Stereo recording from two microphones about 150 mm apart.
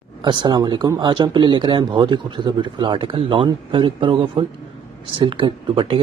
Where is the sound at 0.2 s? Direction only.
30° right (ahead or behind).